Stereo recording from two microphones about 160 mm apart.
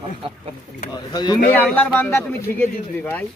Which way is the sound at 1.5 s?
10° left (ahead or behind).